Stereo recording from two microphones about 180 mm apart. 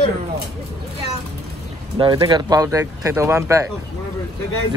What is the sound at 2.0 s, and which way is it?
Speech, 25° right (ahead or behind).